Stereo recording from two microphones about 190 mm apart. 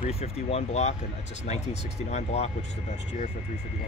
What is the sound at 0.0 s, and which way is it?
Speech, 30° left (ahead or behind).